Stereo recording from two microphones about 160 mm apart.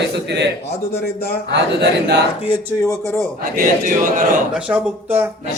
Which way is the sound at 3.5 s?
60° right (ahead or behind).